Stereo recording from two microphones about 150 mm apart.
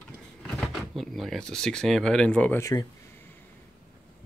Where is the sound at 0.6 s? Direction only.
Centre (ahead or behind).